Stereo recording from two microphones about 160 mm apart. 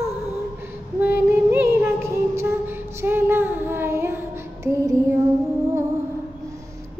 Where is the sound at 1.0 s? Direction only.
15° right (ahead or behind).